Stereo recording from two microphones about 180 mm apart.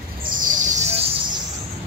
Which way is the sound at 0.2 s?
50° right (ahead or behind).